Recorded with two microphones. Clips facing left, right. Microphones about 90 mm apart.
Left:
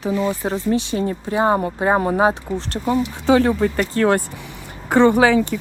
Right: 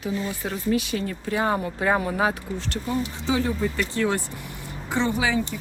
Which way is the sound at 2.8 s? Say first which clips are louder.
Left 9 dB; 60° left (ahead or behind).